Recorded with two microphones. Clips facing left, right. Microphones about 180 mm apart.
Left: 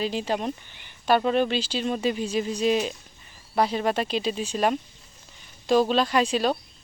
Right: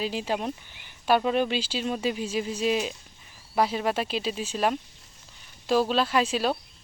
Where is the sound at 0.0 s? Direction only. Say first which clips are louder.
Left 2 dB; 5° right (ahead or behind).